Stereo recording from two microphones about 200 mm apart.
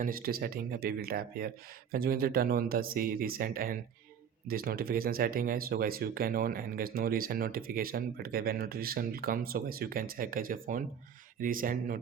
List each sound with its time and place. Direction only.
0.0 s speech: 45° right (ahead or behind)